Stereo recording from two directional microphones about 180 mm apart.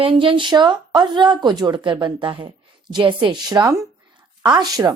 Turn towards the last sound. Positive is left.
turn(degrees=-20)  # may be behind; listen again after turning